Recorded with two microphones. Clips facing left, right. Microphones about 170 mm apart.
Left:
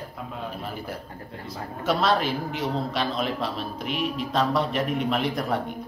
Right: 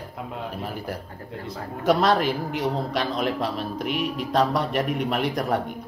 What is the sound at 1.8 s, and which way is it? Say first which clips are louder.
Speech: right 3 dB; 15° right (ahead or behind).